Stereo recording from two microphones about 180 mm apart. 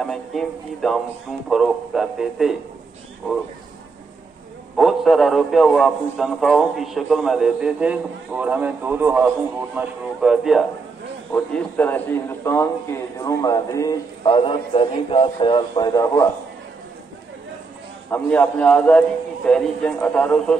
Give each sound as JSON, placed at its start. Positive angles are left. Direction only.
{"t": 0.0, "sound": "a man's voice", "side_deg": 0}
{"t": 4.7, "sound": "a man's voice", "side_deg": 0}
{"t": 18.1, "sound": "a man's voice", "side_deg": 10}